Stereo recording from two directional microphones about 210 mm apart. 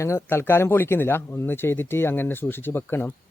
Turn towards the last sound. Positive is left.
turn(degrees=10)  # may be behind; listen again after turning